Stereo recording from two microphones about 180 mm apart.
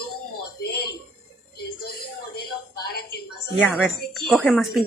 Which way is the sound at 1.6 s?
60° left (ahead or behind).